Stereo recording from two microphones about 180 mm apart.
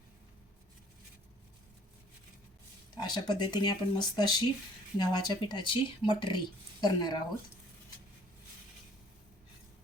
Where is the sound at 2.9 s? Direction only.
25° left (ahead or behind).